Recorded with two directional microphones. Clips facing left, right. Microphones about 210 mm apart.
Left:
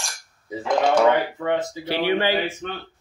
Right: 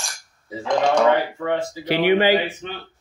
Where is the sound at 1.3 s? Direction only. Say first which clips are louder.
Even; 20° left (ahead or behind).